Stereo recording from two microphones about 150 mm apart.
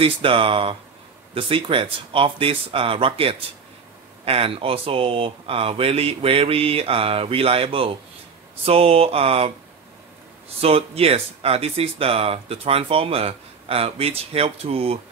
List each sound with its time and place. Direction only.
0.0 s speech: 35° right (ahead or behind)
10.6 s speech: 40° right (ahead or behind)